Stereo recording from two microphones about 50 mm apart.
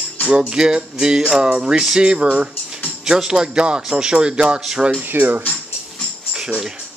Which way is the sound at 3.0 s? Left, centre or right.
Centre.